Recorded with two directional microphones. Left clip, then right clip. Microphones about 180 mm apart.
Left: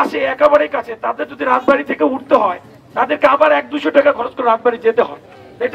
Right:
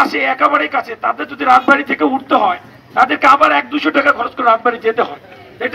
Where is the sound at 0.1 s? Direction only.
55° left (ahead or behind).